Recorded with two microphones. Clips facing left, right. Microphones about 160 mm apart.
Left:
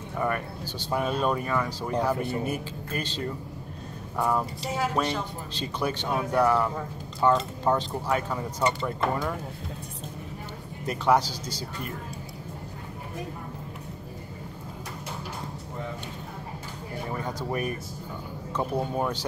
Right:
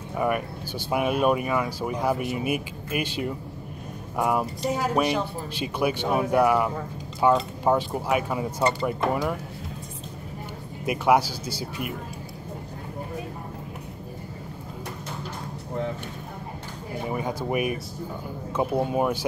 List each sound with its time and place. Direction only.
0.2 s speech: 10° right (ahead or behind)
4.6 s speech: 45° right (ahead or behind)
4.9 s speech: 10° right (ahead or behind)
10.9 s speech: 10° right (ahead or behind)
17.1 s speech: 10° right (ahead or behind)